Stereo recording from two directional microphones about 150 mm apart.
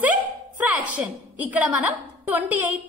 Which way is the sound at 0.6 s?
10° right (ahead or behind).